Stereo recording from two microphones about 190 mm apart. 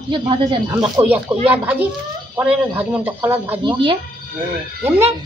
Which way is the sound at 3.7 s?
25° right (ahead or behind).